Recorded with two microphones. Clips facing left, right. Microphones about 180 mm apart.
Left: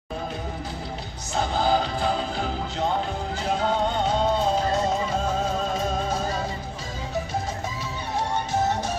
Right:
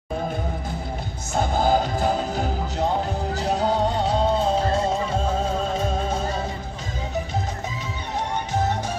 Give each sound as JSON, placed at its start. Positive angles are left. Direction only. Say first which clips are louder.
{"t": 1.3, "sound": "music", "louder": "right 2 dB", "side_deg": -45}